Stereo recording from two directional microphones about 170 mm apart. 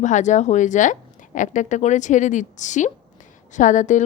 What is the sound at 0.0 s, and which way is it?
A woman's voice, 45° left (ahead or behind).